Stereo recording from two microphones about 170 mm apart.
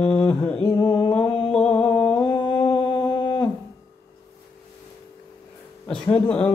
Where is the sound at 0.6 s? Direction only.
25° left (ahead or behind).